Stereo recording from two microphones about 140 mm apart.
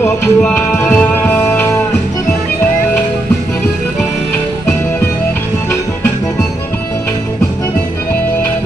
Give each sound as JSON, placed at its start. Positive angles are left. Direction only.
{"t": 0.0, "sound": "music", "side_deg": 15}